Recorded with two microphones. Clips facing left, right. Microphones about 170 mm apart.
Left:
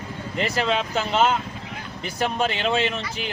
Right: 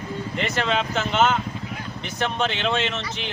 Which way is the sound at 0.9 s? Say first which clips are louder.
Even; 35° left (ahead or behind).